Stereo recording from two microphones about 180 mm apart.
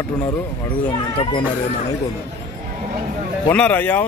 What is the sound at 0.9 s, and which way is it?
Speech, 25° left (ahead or behind).